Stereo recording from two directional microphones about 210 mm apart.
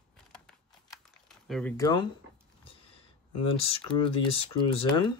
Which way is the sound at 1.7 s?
15° left (ahead or behind).